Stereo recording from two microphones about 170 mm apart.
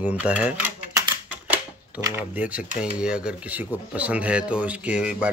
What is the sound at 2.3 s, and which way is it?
Speech, 10° right (ahead or behind).